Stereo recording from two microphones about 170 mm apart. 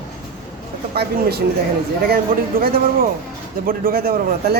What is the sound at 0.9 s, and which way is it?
Speech, 65° right (ahead or behind).